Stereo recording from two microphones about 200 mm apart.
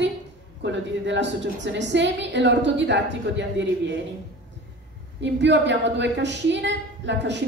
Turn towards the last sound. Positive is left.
turn(degrees=-60)  # may be behind; listen again after turning